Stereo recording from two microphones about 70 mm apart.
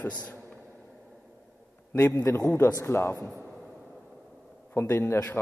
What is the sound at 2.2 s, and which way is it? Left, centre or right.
A man's voice, left.